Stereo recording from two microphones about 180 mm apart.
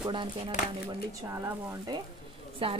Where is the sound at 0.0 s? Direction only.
25° right (ahead or behind).